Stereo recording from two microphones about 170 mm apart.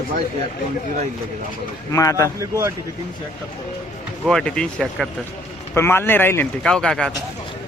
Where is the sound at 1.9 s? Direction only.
20° left (ahead or behind).